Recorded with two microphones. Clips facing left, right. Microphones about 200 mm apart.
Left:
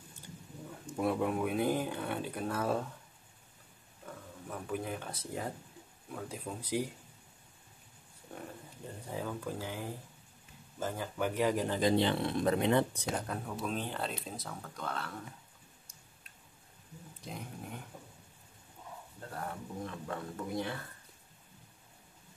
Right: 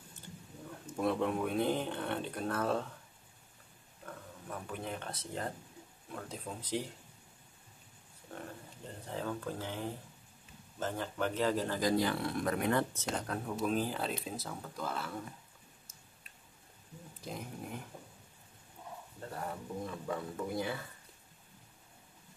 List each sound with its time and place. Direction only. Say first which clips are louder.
0.1 s speech: left 1 dB; 10° left (ahead or behind)
4.0 s speech: left 1 dB; 5° left (ahead or behind)
9.0 s speech: even; 10° left (ahead or behind)
13.3 s speech: right 3 dB; centre (ahead or behind)
17.2 s speech: right 2 dB; centre (ahead or behind)
19.3 s speech: even; 5° right (ahead or behind)